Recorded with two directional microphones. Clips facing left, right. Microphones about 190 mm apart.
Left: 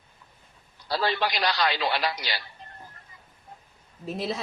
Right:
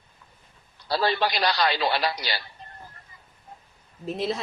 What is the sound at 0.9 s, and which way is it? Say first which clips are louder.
Speech: right 2 dB; 35° right (ahead or behind).